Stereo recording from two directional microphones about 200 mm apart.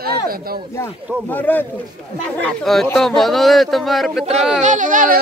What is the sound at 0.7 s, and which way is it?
Speech, 10° left (ahead or behind).